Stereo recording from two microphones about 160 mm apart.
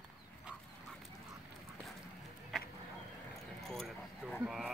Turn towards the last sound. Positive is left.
turn(degrees=0)  # may be behind; listen again after turning